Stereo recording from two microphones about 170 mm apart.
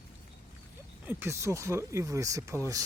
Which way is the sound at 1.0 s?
15° right (ahead or behind).